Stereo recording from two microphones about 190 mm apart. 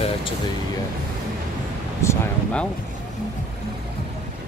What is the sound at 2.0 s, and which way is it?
Speech, 15° left (ahead or behind).